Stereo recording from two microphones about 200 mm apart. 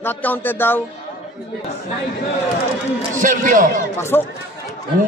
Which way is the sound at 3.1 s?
40° right (ahead or behind).